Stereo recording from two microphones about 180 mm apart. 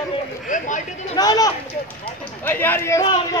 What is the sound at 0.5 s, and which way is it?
Speech, 45° left (ahead or behind).